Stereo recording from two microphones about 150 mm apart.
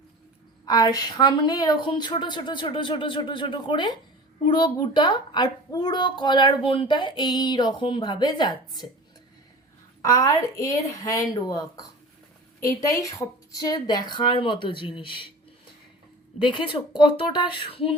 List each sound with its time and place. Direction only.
0.6 s a woman's voice: 25° left (ahead or behind)
10.0 s a woman's voice: 20° left (ahead or behind)
16.4 s a woman's voice: 35° left (ahead or behind)